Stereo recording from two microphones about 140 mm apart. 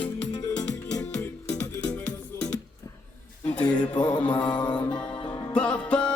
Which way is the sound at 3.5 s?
10° left (ahead or behind).